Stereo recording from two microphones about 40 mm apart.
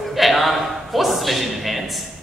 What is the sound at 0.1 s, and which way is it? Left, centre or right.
Speech, centre.